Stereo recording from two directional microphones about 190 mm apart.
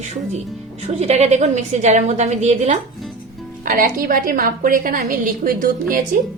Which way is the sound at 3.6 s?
50° right (ahead or behind).